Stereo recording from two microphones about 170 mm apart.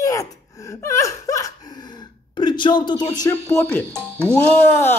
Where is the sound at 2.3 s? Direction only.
25° left (ahead or behind).